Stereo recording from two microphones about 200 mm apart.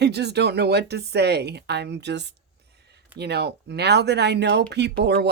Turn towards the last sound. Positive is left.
turn(degrees=-55)  # may be behind; listen again after turning